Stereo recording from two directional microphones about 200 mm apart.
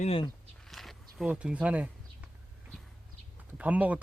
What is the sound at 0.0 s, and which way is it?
Speech, 30° left (ahead or behind).